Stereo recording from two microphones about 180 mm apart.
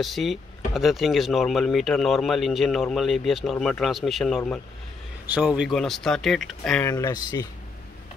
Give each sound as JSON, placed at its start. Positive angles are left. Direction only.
{"t": 0.0, "sound": "a man's voice", "side_deg": 0}
{"t": 6.9, "sound": "speech", "side_deg": 20}